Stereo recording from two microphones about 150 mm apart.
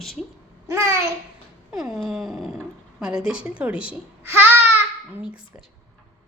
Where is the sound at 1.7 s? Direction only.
5° right (ahead or behind).